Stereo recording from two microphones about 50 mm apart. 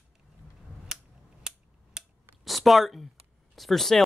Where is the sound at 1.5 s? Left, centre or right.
Centre.